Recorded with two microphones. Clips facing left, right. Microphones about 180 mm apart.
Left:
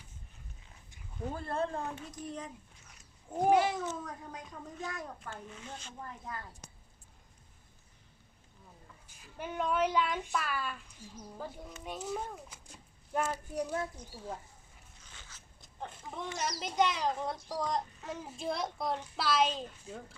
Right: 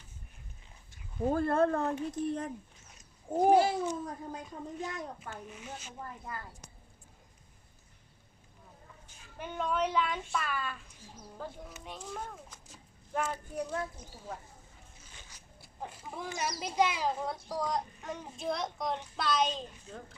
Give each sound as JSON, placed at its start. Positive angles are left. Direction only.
{"t": 1.3, "sound": "speech", "side_deg": -55}
{"t": 3.3, "sound": "speech", "side_deg": -30}
{"t": 9.0, "sound": "a woman's voice", "side_deg": 5}
{"t": 11.9, "sound": "a child's voice", "side_deg": 5}
{"t": 15.1, "sound": "a sound", "side_deg": -15}
{"t": 16.4, "sound": "speech", "side_deg": -5}